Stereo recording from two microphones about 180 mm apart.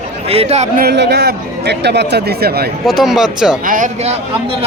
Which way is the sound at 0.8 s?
65° right (ahead or behind).